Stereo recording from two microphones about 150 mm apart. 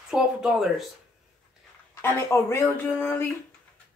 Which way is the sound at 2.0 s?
15° left (ahead or behind).